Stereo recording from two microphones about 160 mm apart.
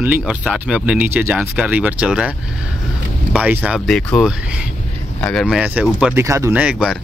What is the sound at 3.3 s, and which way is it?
Speech, 5° right (ahead or behind).